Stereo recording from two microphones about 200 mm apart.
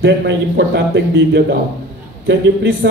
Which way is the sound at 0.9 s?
60° right (ahead or behind).